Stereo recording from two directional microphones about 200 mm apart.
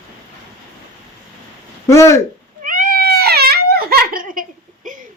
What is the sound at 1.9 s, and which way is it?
Speech, 15° left (ahead or behind).